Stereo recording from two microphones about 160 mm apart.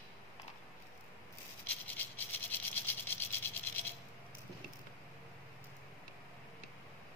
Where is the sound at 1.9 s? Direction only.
10° left (ahead or behind).